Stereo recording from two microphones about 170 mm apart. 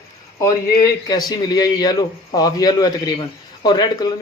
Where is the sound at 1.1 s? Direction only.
25° left (ahead or behind).